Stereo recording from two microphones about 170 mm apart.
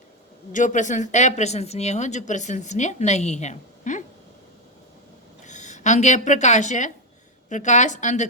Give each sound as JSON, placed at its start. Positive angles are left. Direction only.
{"t": 0.5, "sound": "speech", "side_deg": 45}
{"t": 5.5, "sound": "speech", "side_deg": 45}